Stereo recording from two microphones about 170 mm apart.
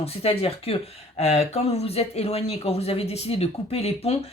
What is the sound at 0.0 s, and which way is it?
Speech, 35° left (ahead or behind).